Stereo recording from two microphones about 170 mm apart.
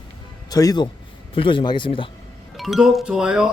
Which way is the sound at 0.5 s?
20° left (ahead or behind).